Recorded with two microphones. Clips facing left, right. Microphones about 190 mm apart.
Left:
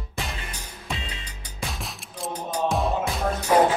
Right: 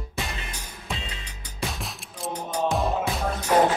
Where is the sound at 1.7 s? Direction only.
Centre (ahead or behind).